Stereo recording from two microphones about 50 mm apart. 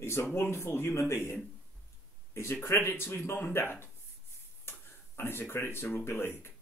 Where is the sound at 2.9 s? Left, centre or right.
Left.